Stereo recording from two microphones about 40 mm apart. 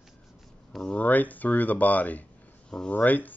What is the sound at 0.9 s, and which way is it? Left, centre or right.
Speech, left.